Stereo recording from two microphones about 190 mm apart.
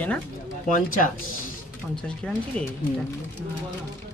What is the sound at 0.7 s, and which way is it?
Speech, 45° left (ahead or behind).